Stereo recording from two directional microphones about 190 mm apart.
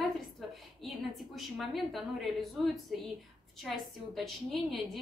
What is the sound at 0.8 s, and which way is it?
A woman's voice, centre (ahead or behind).